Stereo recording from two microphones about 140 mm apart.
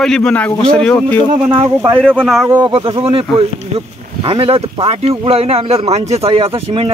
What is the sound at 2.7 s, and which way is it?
Speech, 40° right (ahead or behind).